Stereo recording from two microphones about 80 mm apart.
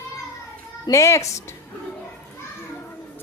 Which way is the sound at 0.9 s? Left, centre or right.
Left.